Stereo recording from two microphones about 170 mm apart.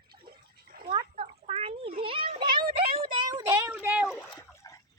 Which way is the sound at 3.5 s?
15° right (ahead or behind).